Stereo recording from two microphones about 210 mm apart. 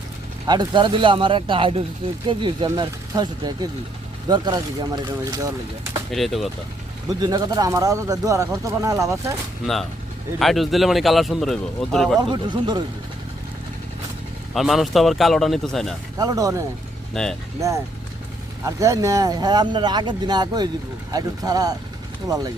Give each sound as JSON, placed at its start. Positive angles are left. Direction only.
{"t": 0.4, "sound": "speech", "side_deg": -20}
{"t": 6.1, "sound": "speech", "side_deg": 0}
{"t": 7.1, "sound": "speech", "side_deg": -20}
{"t": 10.4, "sound": "speech", "side_deg": 0}
{"t": 12.3, "sound": "speech", "side_deg": -20}
{"t": 14.5, "sound": "speech", "side_deg": 0}
{"t": 16.1, "sound": "speech", "side_deg": -15}
{"t": 18.6, "sound": "speech", "side_deg": -15}